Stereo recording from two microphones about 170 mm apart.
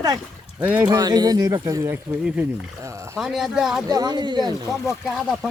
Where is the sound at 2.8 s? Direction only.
20° right (ahead or behind).